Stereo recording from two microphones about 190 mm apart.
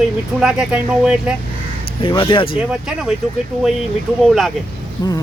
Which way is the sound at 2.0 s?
25° left (ahead or behind).